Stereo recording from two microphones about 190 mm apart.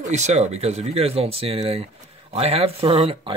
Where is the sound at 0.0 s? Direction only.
35° right (ahead or behind).